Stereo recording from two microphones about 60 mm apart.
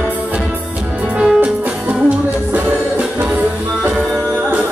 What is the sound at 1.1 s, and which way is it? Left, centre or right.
Music, centre.